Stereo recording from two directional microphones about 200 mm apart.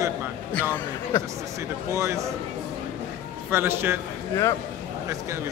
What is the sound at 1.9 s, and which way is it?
Speech, 15° right (ahead or behind).